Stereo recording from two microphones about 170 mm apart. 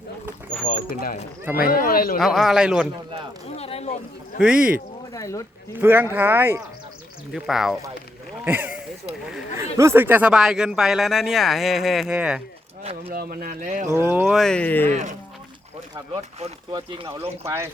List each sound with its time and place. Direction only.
1.5 s speech: 55° left (ahead or behind)
2.1 s speech: centre (ahead or behind)
3.5 s a sound: 35° left (ahead or behind)
4.4 s speech: 5° right (ahead or behind)
5.1 s speech: 20° left (ahead or behind)
5.7 s speech: 10° right (ahead or behind)
7.3 s speech: centre (ahead or behind)
13.1 s speech: 60° right (ahead or behind)
13.8 s speech: 15° right (ahead or behind)
14.3 s speech: 5° left (ahead or behind)
16.1 s speech: 30° right (ahead or behind)
17.4 s speech: 15° right (ahead or behind)